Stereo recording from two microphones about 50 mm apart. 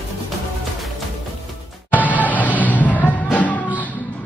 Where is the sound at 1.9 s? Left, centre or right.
Left.